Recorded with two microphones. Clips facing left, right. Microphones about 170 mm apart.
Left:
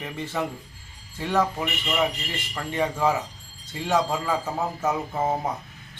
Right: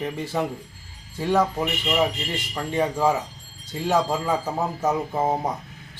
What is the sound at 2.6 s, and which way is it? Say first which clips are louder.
Speech: right 2 dB; 10° right (ahead or behind).